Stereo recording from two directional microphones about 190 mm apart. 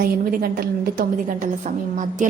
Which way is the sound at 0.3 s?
50° right (ahead or behind).